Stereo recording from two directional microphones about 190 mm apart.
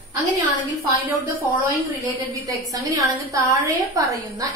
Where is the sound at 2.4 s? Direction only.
20° right (ahead or behind).